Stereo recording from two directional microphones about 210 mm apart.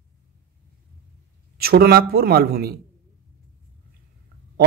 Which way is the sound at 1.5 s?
50° right (ahead or behind).